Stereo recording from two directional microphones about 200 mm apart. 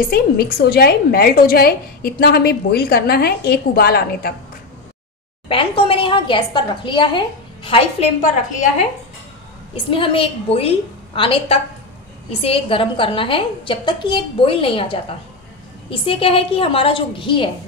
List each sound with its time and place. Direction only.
0.1 s a woman's voice: 50° left (ahead or behind)
5.5 s a woman's voice: 25° left (ahead or behind)
9.8 s a woman's voice: 25° left (ahead or behind)